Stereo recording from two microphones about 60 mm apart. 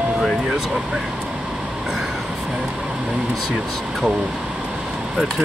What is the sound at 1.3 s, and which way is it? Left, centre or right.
Vehicle, centre.